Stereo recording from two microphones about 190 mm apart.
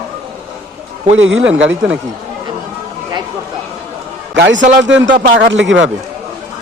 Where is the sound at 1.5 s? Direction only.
5° right (ahead or behind).